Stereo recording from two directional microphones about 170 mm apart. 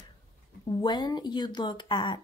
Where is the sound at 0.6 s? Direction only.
25° left (ahead or behind).